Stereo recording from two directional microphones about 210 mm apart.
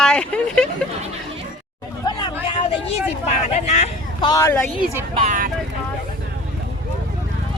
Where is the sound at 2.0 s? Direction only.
20° left (ahead or behind).